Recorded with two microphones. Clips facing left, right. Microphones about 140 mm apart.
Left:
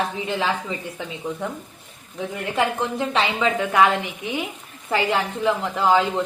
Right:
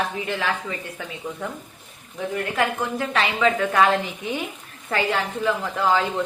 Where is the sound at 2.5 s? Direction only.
20° left (ahead or behind).